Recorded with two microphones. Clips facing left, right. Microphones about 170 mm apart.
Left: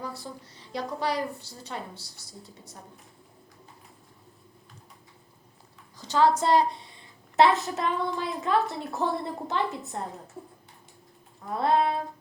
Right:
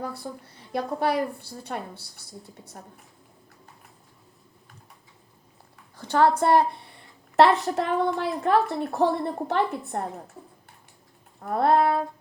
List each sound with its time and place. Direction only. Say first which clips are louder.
0.0 s a woman's voice: right 4 dB; 55° right (ahead or behind)
6.0 s a sound: right 2 dB; 60° right (ahead or behind)
7.6 s a woman's voice: right 4 dB; 60° right (ahead or behind)
11.4 s a woman's voice: right 4 dB; 60° right (ahead or behind)